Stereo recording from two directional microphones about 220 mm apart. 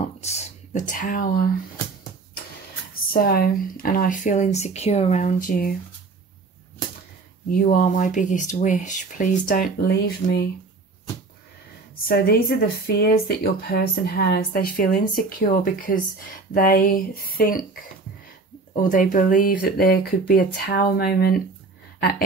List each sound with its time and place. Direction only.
0.0 s speech: 30° left (ahead or behind)
3.1 s speech: 45° left (ahead or behind)
7.5 s speech: 35° left (ahead or behind)
12.1 s speech: 45° left (ahead or behind)
18.8 s speech: 35° left (ahead or behind)